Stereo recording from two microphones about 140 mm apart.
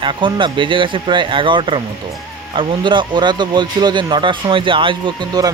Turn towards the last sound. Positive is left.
turn(degrees=-30)  # may be behind; listen again after turning